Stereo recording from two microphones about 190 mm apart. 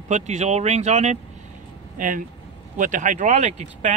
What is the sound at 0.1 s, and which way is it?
Speech, 35° right (ahead or behind).